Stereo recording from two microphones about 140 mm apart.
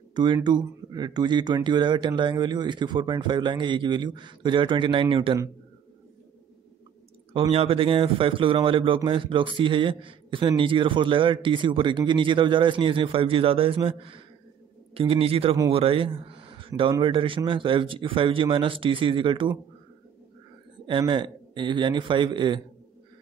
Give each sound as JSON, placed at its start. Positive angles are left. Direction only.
{"t": 0.1, "sound": "speech", "side_deg": -30}
{"t": 7.3, "sound": "a man's voice", "side_deg": -45}
{"t": 21.1, "sound": "speech", "side_deg": -35}